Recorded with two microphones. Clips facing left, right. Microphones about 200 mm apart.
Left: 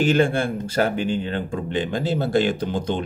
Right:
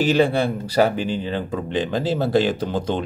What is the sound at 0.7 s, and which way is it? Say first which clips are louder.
Speech: right 3 dB; 40° right (ahead or behind).